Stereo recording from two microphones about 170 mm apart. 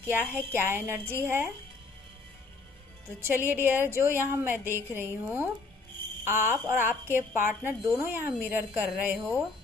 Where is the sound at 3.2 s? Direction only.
15° right (ahead or behind).